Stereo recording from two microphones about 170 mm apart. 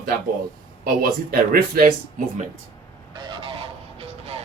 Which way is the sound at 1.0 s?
60° right (ahead or behind).